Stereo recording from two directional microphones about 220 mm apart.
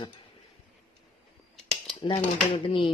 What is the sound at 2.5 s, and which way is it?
Speech, 25° left (ahead or behind).